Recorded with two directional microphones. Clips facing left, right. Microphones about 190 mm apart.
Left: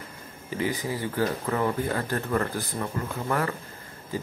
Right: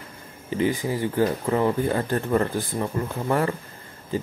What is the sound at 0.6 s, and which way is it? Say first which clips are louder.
Speech: right 5 dB; 25° right (ahead or behind).